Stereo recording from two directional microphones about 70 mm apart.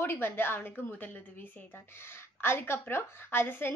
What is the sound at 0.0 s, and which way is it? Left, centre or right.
A woman's voice, left.